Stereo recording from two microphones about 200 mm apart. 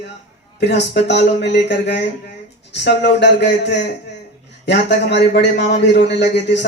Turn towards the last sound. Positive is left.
turn(degrees=60)  # may be behind; listen again after turning